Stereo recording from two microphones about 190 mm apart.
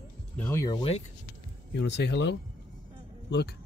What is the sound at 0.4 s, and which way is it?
Speech, 15° left (ahead or behind).